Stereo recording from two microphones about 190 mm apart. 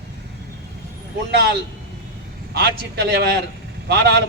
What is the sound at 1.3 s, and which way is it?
Speech, 60° right (ahead or behind).